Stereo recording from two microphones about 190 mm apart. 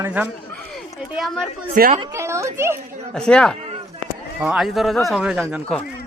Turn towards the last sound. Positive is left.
turn(degrees=-5)  # may be behind; listen again after turning